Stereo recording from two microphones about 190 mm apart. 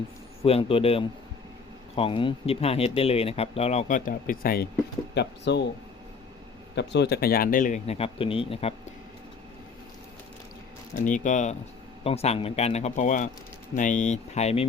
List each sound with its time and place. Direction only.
0.4 s speech: 30° left (ahead or behind); by 4.7 s 50° left (ahead or behind)
5.1 s speech: 65° left (ahead or behind)
6.7 s speech: 65° left (ahead or behind); by 8.7 s 30° left (ahead or behind)
10.9 s speech: 40° left (ahead or behind)